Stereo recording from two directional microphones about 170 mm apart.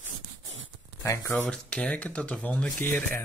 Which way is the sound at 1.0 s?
15° left (ahead or behind).